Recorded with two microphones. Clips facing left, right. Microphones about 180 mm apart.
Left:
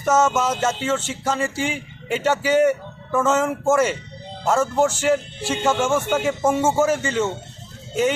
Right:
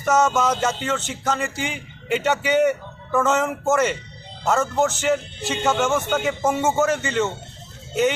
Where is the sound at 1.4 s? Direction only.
30° left (ahead or behind).